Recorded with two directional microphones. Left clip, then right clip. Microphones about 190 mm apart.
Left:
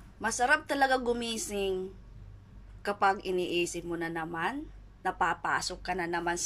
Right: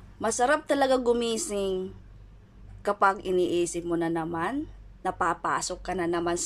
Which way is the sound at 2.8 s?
15° right (ahead or behind).